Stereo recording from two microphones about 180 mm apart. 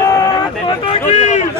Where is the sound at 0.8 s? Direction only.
40° left (ahead or behind).